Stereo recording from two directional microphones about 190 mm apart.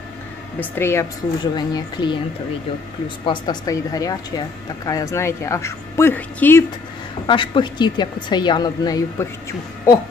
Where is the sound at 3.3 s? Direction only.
20° left (ahead or behind).